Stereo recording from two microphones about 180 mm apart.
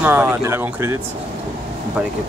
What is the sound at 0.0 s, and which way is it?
Speech, 10° right (ahead or behind).